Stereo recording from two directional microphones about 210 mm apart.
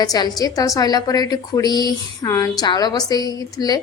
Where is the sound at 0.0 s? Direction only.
20° left (ahead or behind).